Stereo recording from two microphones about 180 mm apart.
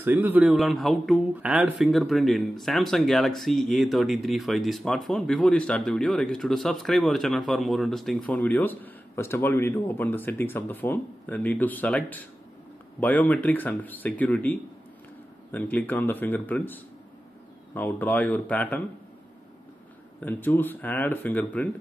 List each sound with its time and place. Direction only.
0.0 s speech: 10° right (ahead or behind); by 18.8 s 10° left (ahead or behind)
20.2 s speech: 10° left (ahead or behind)